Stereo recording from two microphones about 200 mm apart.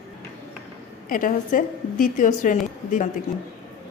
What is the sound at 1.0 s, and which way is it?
Speech, 45° left (ahead or behind).